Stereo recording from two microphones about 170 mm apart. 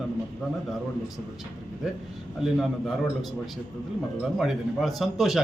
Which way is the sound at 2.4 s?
Centre (ahead or behind).